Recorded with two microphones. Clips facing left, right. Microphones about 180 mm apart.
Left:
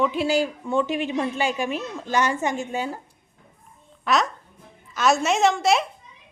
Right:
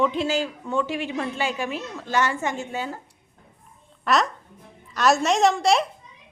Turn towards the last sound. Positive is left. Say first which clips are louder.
# even
turn(degrees=0)  # may be behind; listen again after turning